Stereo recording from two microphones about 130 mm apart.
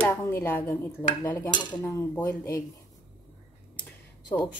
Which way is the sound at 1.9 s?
20° left (ahead or behind).